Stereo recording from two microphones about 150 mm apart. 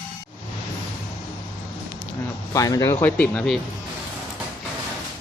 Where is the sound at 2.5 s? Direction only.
25° left (ahead or behind); by 3.6 s 5° left (ahead or behind).